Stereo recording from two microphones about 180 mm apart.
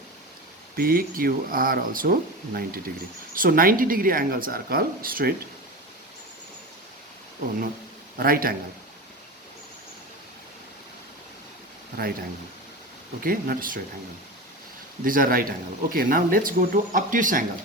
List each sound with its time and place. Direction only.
0.8 s speech: 55° right (ahead or behind)
8.2 s a man's voice: 55° right (ahead or behind)
13.2 s speech: 50° right (ahead or behind)
15.0 s speech: 50° right (ahead or behind)